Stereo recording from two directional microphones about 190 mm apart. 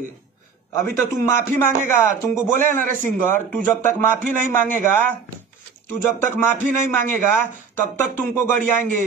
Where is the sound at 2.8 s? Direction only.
45° right (ahead or behind).